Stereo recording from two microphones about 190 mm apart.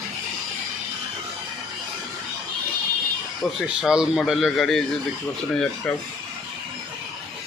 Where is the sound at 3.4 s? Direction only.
Centre (ahead or behind).